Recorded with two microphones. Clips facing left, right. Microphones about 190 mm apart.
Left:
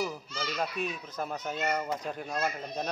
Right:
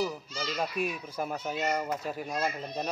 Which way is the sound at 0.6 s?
10° right (ahead or behind).